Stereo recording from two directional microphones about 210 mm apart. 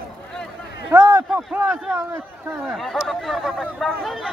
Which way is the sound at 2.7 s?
Centre (ahead or behind).